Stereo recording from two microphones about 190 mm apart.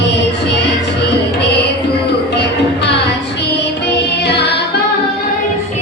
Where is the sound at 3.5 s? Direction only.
65° left (ahead or behind).